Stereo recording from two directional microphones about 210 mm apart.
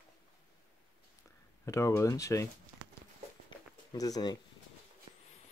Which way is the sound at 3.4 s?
20° left (ahead or behind).